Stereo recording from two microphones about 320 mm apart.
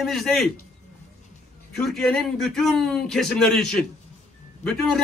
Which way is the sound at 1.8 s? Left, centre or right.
Centre.